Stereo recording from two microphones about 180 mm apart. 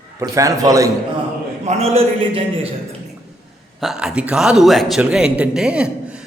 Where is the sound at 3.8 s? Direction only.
Centre (ahead or behind).